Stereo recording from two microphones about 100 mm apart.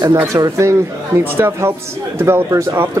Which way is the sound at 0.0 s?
30° right (ahead or behind).